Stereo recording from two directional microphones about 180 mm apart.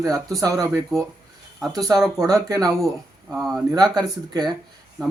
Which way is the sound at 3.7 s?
20° right (ahead or behind).